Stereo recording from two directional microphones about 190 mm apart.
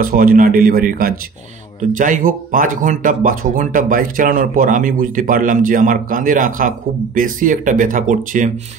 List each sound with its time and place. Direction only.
0.0 s speech: 50° right (ahead or behind)